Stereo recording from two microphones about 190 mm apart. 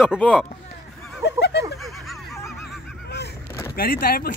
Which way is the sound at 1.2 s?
65° left (ahead or behind).